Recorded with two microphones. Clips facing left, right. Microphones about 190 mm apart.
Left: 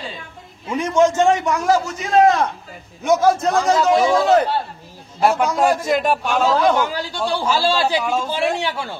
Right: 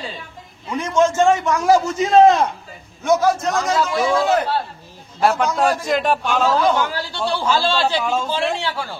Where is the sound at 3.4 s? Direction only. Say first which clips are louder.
Left 3 dB; 30° left (ahead or behind).